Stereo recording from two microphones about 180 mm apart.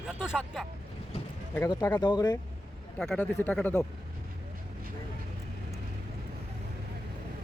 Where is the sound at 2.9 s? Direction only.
5° left (ahead or behind).